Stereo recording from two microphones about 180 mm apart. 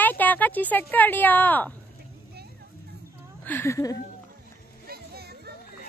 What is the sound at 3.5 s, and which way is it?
Speech, 15° left (ahead or behind).